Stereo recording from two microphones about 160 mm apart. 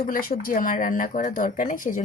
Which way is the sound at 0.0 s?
65° left (ahead or behind).